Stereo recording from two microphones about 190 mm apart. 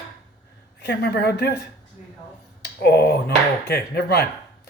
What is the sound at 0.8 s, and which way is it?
Speech, 60° left (ahead or behind).